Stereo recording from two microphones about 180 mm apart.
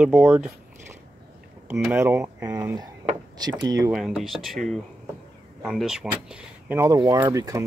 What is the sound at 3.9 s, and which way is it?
Speech, centre (ahead or behind).